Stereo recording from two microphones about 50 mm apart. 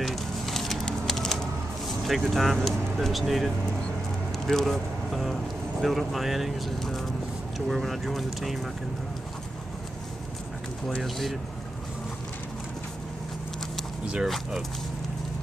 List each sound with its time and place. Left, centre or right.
0.0 s a sound: centre
2.0 s speech: centre
11.0 s speech: centre
14.2 s speech: centre